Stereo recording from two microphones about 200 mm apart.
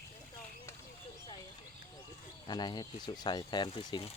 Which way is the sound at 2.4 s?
20° left (ahead or behind).